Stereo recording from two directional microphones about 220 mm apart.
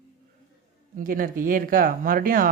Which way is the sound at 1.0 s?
40° right (ahead or behind).